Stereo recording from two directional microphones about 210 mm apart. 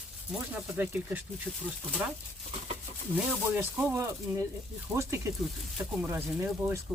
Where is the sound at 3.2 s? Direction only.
10° right (ahead or behind).